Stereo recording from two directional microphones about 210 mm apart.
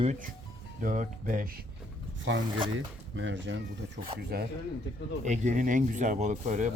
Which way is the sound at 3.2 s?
60° right (ahead or behind).